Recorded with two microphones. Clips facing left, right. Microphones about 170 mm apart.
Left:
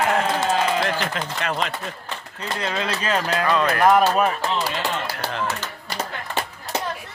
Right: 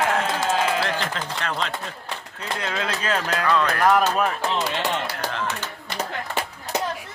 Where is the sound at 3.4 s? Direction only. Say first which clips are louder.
Left 2 dB; 20° left (ahead or behind).